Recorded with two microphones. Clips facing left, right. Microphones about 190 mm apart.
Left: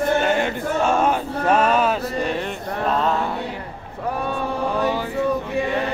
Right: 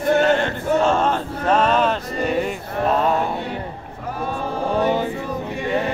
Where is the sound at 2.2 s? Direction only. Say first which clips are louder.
Right 4 dB; 5° right (ahead or behind).